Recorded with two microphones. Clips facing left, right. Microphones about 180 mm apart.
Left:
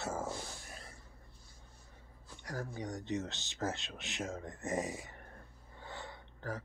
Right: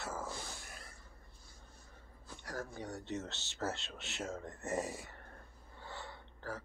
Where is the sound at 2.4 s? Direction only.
10° left (ahead or behind).